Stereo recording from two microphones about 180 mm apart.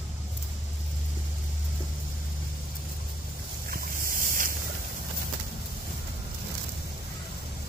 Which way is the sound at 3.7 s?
50° right (ahead or behind).